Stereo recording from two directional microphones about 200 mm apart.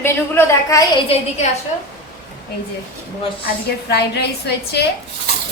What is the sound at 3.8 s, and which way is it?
A woman's voice, 55° left (ahead or behind).